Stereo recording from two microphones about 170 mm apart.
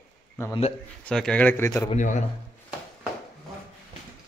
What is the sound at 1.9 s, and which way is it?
Speech, 45° left (ahead or behind).